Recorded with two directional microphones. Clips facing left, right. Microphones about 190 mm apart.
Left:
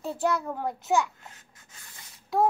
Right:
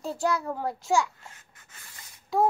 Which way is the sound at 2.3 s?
Centre (ahead or behind).